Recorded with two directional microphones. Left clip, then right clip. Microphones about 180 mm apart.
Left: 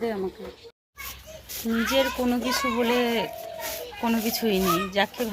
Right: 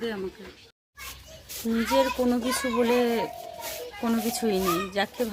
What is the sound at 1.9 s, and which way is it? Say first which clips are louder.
Speech: right 1 dB; 15° right (ahead or behind).